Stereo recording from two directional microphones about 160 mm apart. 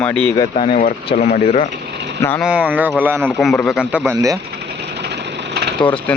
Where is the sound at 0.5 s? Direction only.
45° left (ahead or behind).